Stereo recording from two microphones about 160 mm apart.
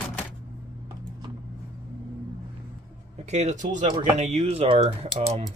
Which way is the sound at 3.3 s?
45° right (ahead or behind).